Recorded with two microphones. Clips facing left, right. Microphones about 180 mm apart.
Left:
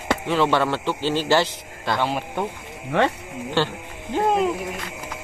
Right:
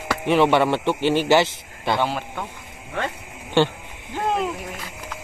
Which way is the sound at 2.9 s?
80° left.